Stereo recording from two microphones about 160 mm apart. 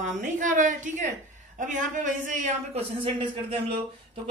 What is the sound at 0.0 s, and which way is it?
A man's voice, 50° right (ahead or behind).